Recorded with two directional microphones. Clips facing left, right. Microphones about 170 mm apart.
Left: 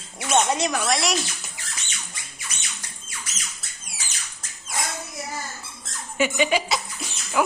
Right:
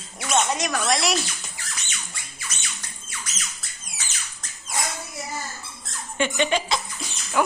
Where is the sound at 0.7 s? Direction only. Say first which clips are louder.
Even; 5° left (ahead or behind).